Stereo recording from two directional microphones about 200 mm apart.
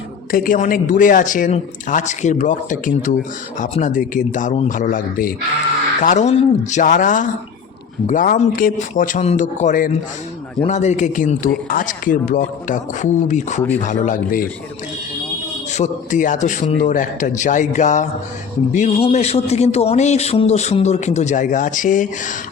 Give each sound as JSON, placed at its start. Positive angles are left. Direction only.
{"t": 0.3, "sound": "a man's voice", "side_deg": 45}
{"t": 15.7, "sound": "a man's voice", "side_deg": 35}